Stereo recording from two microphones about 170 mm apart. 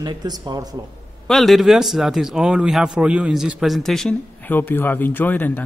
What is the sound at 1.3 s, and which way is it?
A man's voice, centre (ahead or behind).